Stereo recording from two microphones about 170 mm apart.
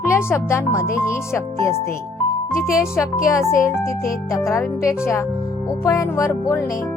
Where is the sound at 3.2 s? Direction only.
15° left (ahead or behind).